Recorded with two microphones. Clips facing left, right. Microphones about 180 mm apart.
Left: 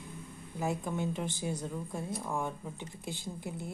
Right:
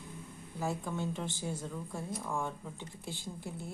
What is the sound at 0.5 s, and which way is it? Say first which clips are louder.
Speech: left 2 dB; 15° left (ahead or behind).